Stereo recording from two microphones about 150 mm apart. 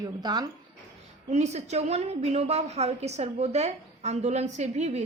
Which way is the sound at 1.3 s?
45° right (ahead or behind).